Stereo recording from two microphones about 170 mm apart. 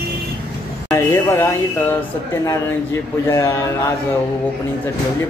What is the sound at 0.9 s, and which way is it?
Speech, 15° left (ahead or behind).